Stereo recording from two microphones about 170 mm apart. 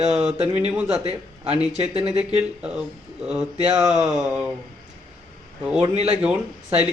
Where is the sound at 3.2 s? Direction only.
10° right (ahead or behind).